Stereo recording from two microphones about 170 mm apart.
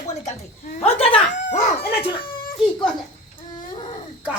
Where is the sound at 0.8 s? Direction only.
35° left (ahead or behind).